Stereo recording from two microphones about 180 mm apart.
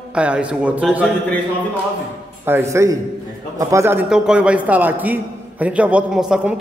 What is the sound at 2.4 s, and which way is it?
A man's voice, 15° right (ahead or behind).